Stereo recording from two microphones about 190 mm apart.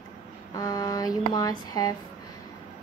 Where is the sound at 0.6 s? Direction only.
20° left (ahead or behind).